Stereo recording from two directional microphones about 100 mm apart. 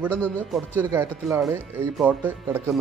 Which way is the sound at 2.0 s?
15° right (ahead or behind).